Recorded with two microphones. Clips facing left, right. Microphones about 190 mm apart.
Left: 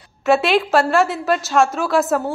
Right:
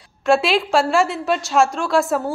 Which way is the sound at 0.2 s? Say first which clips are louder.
Left 1 dB; centre (ahead or behind).